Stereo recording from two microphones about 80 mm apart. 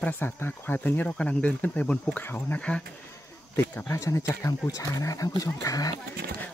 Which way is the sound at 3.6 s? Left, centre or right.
Left.